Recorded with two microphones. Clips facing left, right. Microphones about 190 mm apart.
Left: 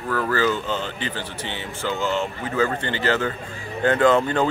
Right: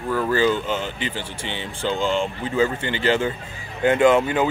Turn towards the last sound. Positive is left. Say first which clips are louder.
# right 1 dB
turn(degrees=-10)  # may be behind; listen again after turning